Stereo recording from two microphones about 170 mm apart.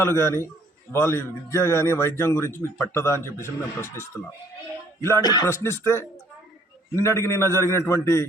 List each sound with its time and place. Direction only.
0.0 s a man's voice: 15° left (ahead or behind)